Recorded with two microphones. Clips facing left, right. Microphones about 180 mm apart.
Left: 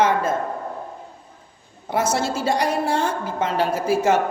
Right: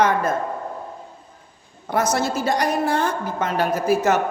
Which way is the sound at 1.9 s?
25° left (ahead or behind).